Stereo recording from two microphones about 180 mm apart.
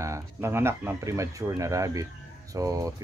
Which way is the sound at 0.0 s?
15° right (ahead or behind).